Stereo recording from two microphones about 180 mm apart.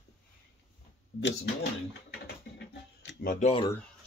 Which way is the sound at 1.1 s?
90° left.